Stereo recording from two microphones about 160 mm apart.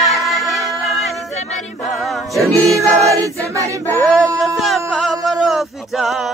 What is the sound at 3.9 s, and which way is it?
Speech, 15° right (ahead or behind).